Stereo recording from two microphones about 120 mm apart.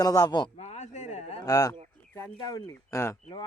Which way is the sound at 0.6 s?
70° left (ahead or behind).